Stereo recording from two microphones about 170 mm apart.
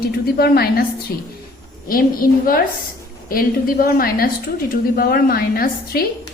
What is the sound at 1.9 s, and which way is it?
A woman's voice, 55° left (ahead or behind).